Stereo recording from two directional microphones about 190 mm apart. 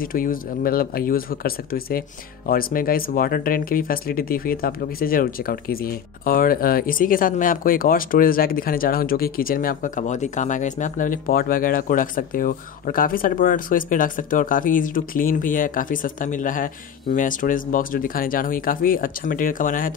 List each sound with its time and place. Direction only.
0.0 s speech: 50° left (ahead or behind)